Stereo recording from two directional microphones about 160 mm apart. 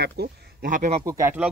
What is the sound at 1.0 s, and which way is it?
Speech, 20° right (ahead or behind).